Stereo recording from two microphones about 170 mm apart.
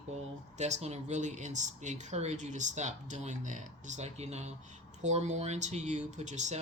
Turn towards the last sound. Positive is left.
turn(degrees=-45)  # may be behind; listen again after turning